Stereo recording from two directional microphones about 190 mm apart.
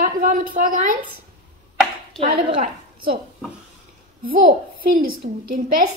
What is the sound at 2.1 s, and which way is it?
Speech, 30° right (ahead or behind).